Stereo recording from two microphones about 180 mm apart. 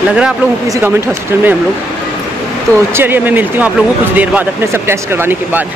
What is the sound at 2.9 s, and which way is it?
Speech, 10° right (ahead or behind).